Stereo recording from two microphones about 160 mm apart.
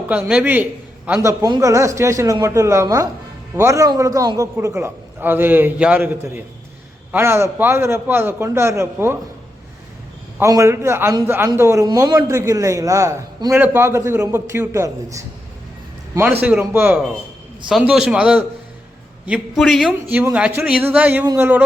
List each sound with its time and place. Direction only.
0.1 s a man's voice: 5° right (ahead or behind)
10.4 s a man's voice: 20° right (ahead or behind)
16.4 s a man's voice: 10° right (ahead or behind)